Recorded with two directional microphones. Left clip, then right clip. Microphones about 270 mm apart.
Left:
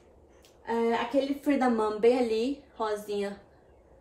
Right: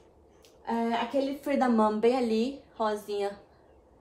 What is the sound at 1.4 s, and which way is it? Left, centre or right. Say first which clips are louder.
A woman's voice: right 1 dB; centre.